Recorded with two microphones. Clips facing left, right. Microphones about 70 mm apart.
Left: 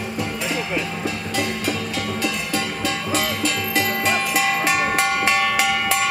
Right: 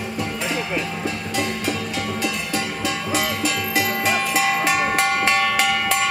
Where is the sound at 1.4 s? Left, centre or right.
Right.